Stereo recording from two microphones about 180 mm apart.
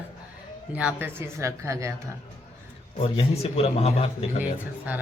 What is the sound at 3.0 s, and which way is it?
A man's voice, 35° left (ahead or behind).